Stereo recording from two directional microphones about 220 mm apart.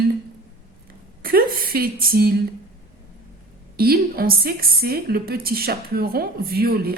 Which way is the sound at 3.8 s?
45° right (ahead or behind).